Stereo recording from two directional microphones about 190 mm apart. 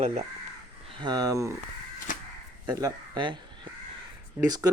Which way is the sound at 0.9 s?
25° right (ahead or behind).